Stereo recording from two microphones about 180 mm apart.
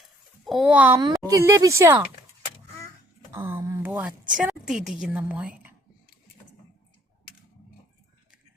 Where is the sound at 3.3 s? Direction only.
10° right (ahead or behind).